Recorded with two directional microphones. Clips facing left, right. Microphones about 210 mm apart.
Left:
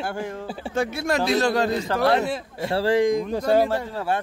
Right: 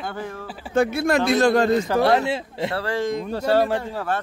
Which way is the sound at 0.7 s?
55° right (ahead or behind).